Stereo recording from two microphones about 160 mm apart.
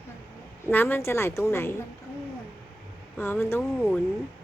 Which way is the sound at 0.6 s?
10° left (ahead or behind).